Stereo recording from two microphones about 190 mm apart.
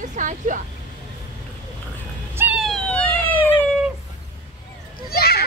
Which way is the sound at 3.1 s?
25° left (ahead or behind).